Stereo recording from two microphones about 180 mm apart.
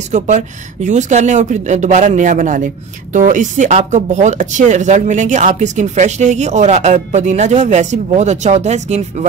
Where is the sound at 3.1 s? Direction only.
45° right (ahead or behind).